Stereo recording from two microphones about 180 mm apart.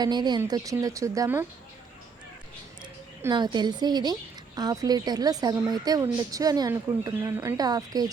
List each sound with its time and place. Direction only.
0.0 s speech: 25° right (ahead or behind)
3.3 s speech: 25° right (ahead or behind)